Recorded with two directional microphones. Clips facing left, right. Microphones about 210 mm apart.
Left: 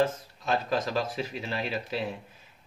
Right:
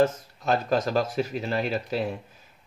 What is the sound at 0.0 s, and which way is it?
Speech, 45° right (ahead or behind).